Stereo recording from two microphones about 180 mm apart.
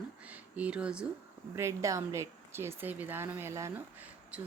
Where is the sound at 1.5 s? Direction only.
15° right (ahead or behind).